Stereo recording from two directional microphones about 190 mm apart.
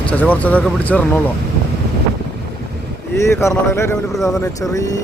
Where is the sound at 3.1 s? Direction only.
15° left (ahead or behind).